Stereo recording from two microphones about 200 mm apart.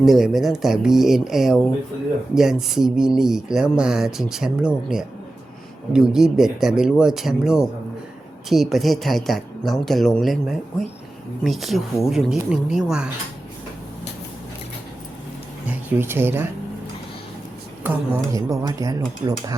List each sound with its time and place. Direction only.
0.0 s speech: centre (ahead or behind)
15.6 s speech: 10° right (ahead or behind)
17.8 s speech: 15° right (ahead or behind)